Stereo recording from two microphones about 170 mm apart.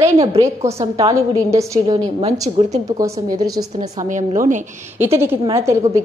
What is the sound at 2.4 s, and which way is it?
Speech, 40° right (ahead or behind).